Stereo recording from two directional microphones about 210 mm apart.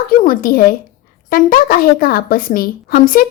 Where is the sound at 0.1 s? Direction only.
40° left (ahead or behind).